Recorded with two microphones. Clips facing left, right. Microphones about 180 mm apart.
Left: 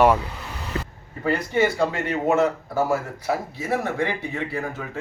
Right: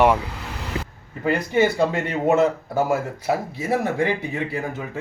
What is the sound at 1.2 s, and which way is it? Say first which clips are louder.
Speech: right 2 dB; 20° right (ahead or behind).